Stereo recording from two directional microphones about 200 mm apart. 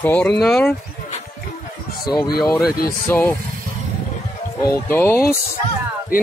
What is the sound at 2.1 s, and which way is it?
Speech, 20° left (ahead or behind).